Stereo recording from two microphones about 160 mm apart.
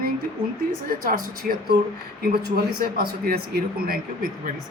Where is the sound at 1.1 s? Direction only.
70° right (ahead or behind).